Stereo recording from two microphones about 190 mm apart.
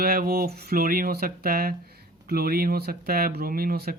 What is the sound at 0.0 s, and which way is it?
Speech, 50° right (ahead or behind).